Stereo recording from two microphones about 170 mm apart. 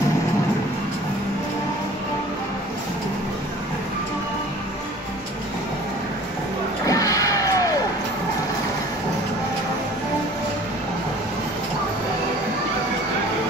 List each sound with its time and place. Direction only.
6.9 s vehicle: 20° left (ahead or behind)